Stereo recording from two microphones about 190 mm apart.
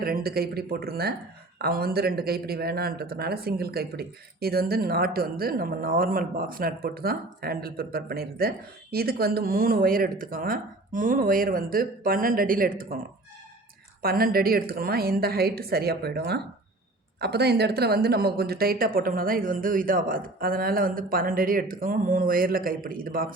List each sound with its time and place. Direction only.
0.0 s speech: 50° right (ahead or behind)
14.0 s speech: 50° right (ahead or behind)